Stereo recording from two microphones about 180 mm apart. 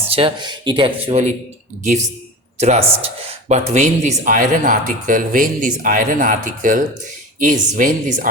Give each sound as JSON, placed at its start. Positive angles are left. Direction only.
{"t": 0.1, "sound": "speech", "side_deg": -30}